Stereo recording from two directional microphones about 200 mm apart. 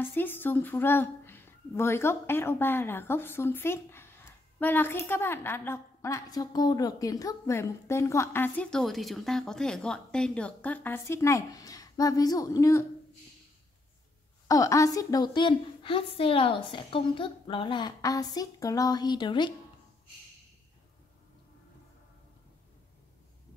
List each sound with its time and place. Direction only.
0.0 s a woman's voice: 10° left (ahead or behind)
14.5 s a woman's voice: 15° left (ahead or behind)